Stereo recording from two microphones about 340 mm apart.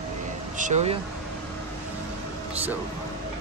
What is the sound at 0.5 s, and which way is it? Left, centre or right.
Speech, right.